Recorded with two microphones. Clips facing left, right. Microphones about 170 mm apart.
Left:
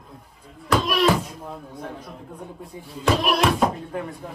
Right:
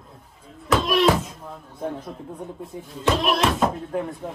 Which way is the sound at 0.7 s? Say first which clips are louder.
Right 1 dB; centre (ahead or behind).